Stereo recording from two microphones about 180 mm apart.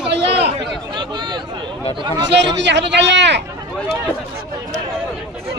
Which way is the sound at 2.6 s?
75° right (ahead or behind).